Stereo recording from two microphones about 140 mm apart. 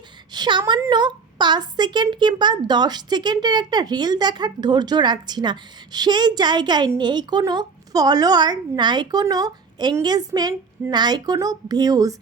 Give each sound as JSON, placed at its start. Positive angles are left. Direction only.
{"t": 0.3, "sound": "a woman's voice", "side_deg": -35}